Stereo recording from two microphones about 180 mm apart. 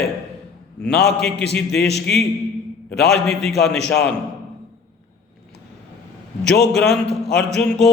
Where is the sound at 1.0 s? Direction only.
65° left (ahead or behind).